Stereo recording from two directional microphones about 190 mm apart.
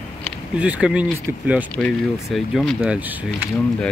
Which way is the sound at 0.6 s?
5° right (ahead or behind).